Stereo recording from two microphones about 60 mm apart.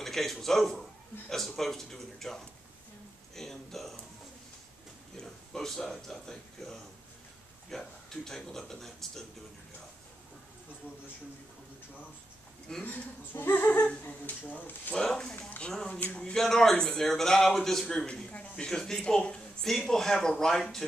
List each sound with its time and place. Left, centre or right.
0.0 s speech: centre
5.1 s speech: centre
7.8 s speech: centre
12.8 s speech: left
15.0 s speech: centre
16.3 s speech: centre